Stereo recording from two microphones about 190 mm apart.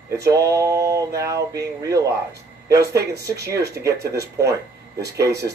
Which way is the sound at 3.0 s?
60° right (ahead or behind).